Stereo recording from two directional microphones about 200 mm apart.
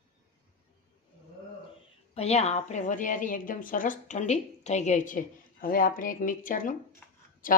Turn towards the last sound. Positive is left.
turn(degrees=45)  # may be behind; listen again after turning